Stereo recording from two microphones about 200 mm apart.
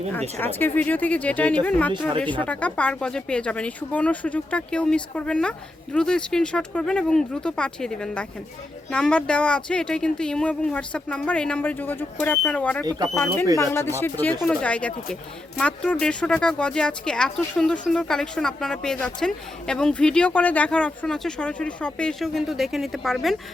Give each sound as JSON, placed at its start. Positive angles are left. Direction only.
{"t": 0.1, "sound": "speech", "side_deg": 10}
{"t": 12.8, "sound": "speech", "side_deg": -20}
{"t": 13.6, "sound": "speech", "side_deg": 10}